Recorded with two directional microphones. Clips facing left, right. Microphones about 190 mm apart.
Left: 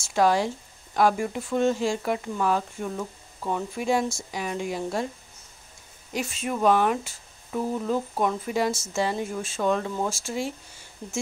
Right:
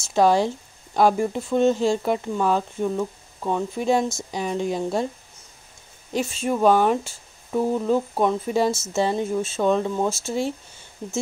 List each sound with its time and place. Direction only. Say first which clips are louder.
0.1 s speech: right 4 dB; 25° right (ahead or behind)
3.7 s speech: right 3 dB; 35° right (ahead or behind)
4.1 s speech: right 4 dB; 25° right (ahead or behind)
6.1 s speech: right 5 dB; 25° right (ahead or behind)